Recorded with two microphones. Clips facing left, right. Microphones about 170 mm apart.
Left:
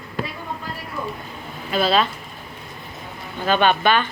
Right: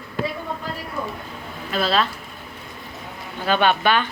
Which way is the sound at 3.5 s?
10° right (ahead or behind).